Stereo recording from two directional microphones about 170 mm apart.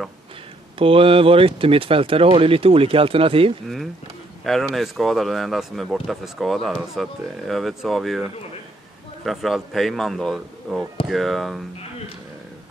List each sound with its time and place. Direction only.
0.7 s speech: 35° right (ahead or behind)
3.6 s speech: centre (ahead or behind)